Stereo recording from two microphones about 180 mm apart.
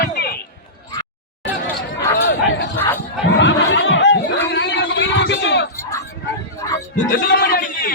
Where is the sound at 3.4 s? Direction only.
90° left.